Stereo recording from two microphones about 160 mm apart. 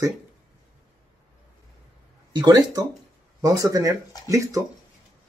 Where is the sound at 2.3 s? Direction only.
25° right (ahead or behind).